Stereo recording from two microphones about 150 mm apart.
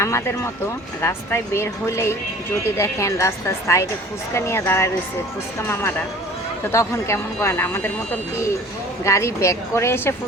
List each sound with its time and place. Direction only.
0.0 s a woman's voice: 20° left (ahead or behind)
9.0 s a woman's voice: 20° left (ahead or behind)